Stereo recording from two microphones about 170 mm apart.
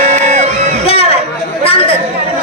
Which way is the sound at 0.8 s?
35° left (ahead or behind).